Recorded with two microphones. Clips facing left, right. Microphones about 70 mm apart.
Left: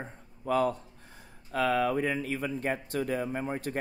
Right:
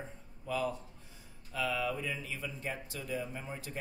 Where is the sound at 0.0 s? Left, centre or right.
Left.